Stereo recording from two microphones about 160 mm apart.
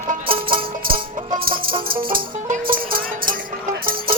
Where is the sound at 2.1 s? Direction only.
50° right (ahead or behind).